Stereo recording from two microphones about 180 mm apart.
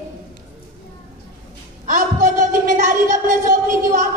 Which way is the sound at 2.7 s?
45° right (ahead or behind).